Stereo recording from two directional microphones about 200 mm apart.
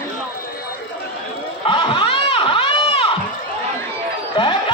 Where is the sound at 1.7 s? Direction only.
25° left (ahead or behind).